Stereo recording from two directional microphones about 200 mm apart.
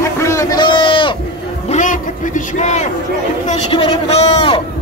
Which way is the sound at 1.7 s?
40° left (ahead or behind).